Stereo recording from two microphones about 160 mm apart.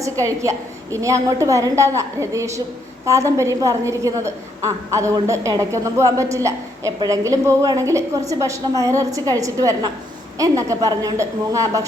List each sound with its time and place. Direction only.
0.0 s a woman's voice: 20° right (ahead or behind)